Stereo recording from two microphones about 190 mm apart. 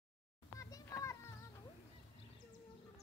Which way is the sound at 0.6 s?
20° left (ahead or behind).